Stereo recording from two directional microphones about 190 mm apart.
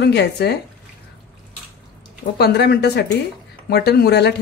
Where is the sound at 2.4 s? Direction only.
60° left (ahead or behind).